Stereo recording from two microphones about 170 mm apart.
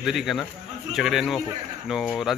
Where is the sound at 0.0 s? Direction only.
Centre (ahead or behind).